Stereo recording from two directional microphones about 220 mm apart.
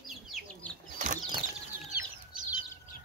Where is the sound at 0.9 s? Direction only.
35° right (ahead or behind).